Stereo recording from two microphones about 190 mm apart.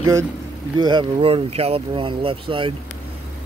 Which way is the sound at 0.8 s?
25° right (ahead or behind).